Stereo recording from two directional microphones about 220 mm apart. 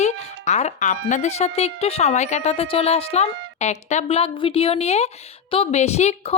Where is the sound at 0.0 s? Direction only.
30° left (ahead or behind).